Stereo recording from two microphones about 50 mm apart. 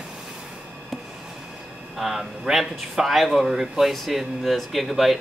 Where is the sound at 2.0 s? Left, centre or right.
Centre.